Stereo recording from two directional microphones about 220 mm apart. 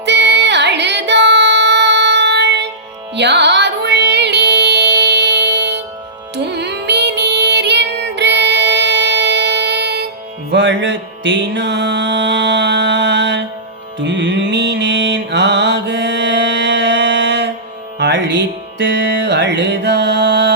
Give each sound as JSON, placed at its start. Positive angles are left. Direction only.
{"t": 0.0, "sound": "music", "side_deg": -50}
{"t": 14.0, "sound": "mantra", "side_deg": -55}
{"t": 18.0, "sound": "music", "side_deg": -55}